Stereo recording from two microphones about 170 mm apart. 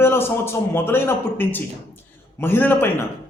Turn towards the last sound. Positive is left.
turn(degrees=10)  # may be behind; listen again after turning